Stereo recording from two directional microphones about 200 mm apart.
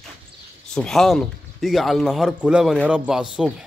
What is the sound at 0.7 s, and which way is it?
A man's voice, 5° left (ahead or behind).